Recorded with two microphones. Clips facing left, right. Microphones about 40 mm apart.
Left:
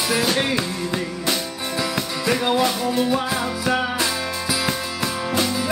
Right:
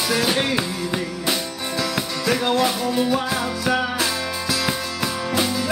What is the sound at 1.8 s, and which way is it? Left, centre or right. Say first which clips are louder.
Music: even; centre.